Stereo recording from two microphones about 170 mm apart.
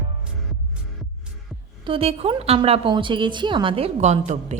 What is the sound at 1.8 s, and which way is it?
A woman's voice, 35° right (ahead or behind).